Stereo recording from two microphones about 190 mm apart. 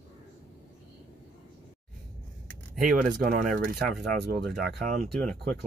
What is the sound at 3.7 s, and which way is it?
Speech, centre (ahead or behind).